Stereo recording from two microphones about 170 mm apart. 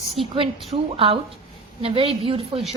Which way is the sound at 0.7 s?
30° right (ahead or behind).